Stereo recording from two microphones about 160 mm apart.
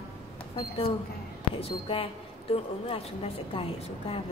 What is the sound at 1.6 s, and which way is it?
A woman's voice, 35° left (ahead or behind).